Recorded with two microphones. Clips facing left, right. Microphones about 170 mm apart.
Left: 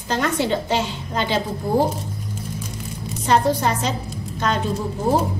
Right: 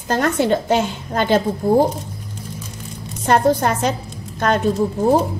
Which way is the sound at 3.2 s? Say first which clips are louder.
Right 3 dB; 50° right (ahead or behind).